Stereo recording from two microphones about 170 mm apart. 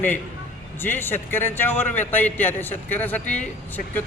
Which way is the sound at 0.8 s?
10° left (ahead or behind).